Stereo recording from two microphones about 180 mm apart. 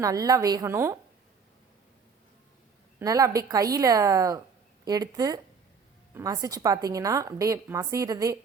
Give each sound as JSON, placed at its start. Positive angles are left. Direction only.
{"t": 0.0, "sound": "a woman's voice", "side_deg": -20}
{"t": 3.0, "sound": "a woman's voice", "side_deg": -20}